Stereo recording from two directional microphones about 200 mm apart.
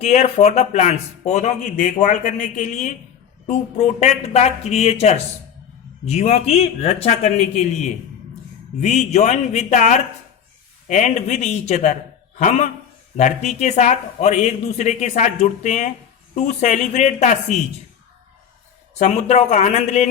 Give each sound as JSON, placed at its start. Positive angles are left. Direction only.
{"t": 0.0, "sound": "speech", "side_deg": 35}
{"t": 18.9, "sound": "speech", "side_deg": 35}